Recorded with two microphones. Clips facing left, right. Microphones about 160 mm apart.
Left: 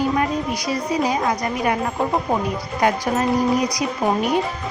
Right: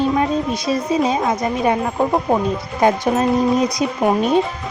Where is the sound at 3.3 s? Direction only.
25° right (ahead or behind).